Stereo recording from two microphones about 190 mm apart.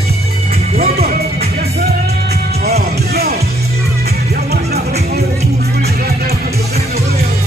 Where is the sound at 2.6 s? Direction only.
55° right (ahead or behind).